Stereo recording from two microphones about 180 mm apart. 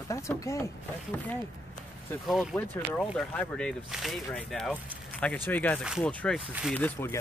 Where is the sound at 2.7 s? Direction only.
10° left (ahead or behind).